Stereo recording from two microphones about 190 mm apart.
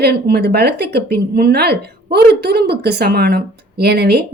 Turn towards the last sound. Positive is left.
turn(degrees=-60)  # may be behind; listen again after turning